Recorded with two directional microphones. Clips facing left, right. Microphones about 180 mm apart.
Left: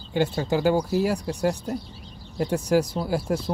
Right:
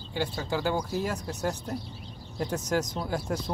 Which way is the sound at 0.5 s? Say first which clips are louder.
Left 6 dB; 15° left (ahead or behind).